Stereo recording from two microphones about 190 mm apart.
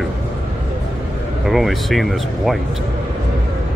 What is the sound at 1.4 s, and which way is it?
Speech, centre (ahead or behind).